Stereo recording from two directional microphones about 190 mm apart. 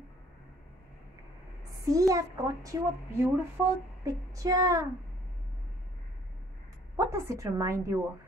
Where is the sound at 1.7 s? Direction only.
15° right (ahead or behind).